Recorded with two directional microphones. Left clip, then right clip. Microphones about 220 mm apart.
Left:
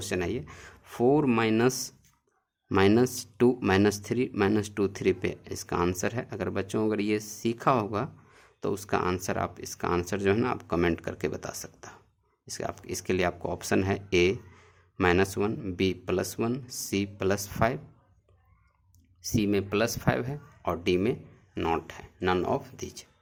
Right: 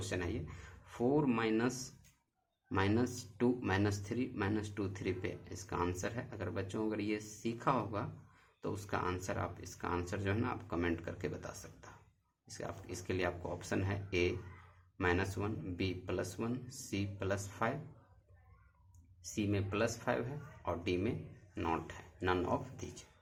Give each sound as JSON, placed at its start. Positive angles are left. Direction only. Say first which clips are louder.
{"t": 0.0, "sound": "speech", "louder": "left 9 dB", "side_deg": 45}
{"t": 19.2, "sound": "speech", "louder": "left 11 dB", "side_deg": 45}